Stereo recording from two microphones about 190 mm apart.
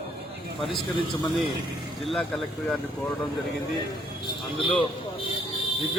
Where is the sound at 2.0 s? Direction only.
5° left (ahead or behind).